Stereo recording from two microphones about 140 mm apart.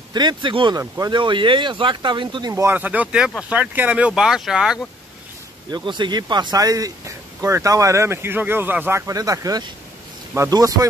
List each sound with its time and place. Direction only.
0.1 s speech: 30° right (ahead or behind)
2.5 s speech: 15° right (ahead or behind)
5.7 s speech: 35° right (ahead or behind)